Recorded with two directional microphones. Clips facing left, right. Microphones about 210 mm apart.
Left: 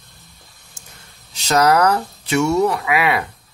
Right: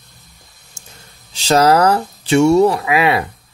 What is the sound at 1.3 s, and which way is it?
Speech, 30° right (ahead or behind).